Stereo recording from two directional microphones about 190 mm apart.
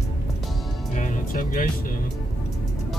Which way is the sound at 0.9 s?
45° left (ahead or behind).